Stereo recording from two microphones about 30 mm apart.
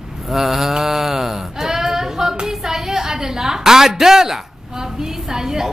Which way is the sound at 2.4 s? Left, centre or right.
Centre.